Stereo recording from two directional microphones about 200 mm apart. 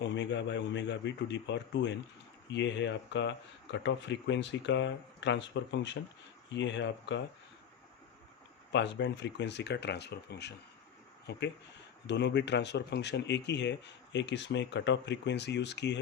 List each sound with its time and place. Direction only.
0.0 s speech: 65° left (ahead or behind)
8.7 s speech: 60° left (ahead or behind)